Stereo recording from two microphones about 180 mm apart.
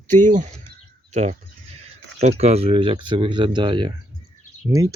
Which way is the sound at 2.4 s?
35° right (ahead or behind).